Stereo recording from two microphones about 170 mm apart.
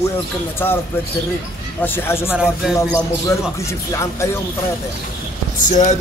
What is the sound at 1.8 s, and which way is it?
Speech, 15° left (ahead or behind).